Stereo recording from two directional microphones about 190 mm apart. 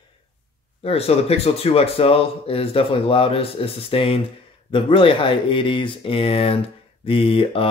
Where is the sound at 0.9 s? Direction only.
30° left (ahead or behind).